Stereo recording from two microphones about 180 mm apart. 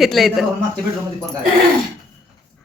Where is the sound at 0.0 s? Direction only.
Centre (ahead or behind).